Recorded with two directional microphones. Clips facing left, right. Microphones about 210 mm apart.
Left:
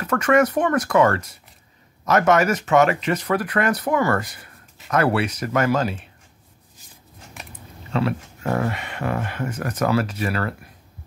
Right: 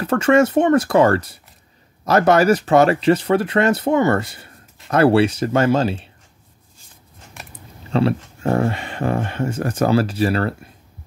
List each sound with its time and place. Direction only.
0.0 s speech: 30° right (ahead or behind)
7.9 s speech: 30° right (ahead or behind)